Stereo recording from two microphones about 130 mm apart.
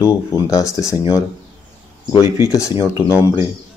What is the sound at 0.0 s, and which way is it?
Speech, 25° left (ahead or behind).